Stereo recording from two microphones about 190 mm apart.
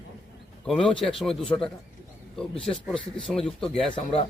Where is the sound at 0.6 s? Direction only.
5° left (ahead or behind).